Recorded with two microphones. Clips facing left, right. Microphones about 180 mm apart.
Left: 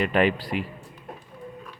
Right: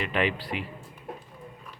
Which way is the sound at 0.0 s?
45° left (ahead or behind).